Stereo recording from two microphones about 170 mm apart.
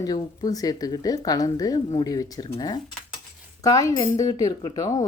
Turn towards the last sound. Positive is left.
turn(degrees=20)  # may be behind; listen again after turning